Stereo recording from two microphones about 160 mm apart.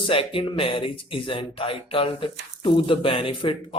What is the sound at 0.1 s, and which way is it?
Speech, 35° left (ahead or behind).